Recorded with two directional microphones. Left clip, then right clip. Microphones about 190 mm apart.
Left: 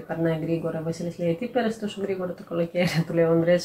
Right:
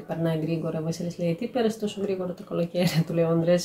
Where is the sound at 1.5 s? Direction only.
15° right (ahead or behind).